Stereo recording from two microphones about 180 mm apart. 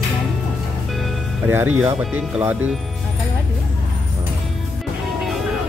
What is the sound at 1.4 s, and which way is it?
Speech, 10° right (ahead or behind).